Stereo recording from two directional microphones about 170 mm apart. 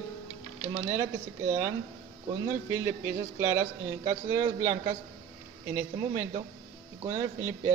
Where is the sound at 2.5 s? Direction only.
15° right (ahead or behind).